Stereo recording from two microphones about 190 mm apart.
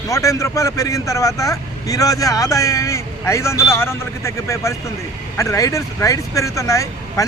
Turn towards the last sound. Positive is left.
turn(degrees=15)  # may be behind; listen again after turning